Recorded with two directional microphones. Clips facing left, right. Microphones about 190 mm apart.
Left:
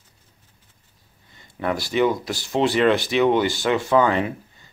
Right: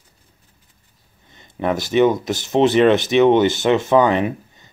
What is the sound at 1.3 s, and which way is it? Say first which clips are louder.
Speech: right 4 dB; 20° right (ahead or behind).